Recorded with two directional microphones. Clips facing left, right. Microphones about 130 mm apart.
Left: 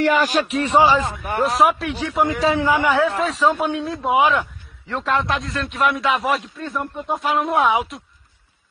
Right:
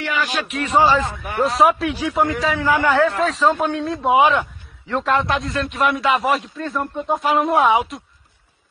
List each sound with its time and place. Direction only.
0.0 s a man's voice: 40° left (ahead or behind)
0.7 s a man's voice: 15° left (ahead or behind)
1.1 s a man's voice: centre (ahead or behind)
2.4 s a man's voice: 20° left (ahead or behind)
3.1 s a man's voice: centre (ahead or behind)